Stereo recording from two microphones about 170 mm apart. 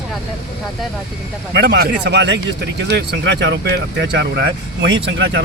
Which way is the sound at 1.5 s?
85° right.